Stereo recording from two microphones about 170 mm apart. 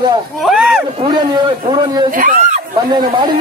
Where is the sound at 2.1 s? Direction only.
50° right (ahead or behind).